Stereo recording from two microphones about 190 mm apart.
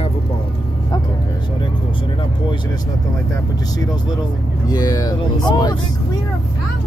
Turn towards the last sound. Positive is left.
turn(degrees=20)  # may be behind; listen again after turning